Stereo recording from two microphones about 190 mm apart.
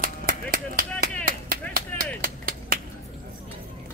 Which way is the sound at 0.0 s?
50° right (ahead or behind).